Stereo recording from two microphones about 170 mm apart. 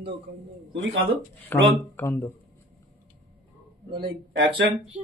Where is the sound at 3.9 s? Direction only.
75° right (ahead or behind).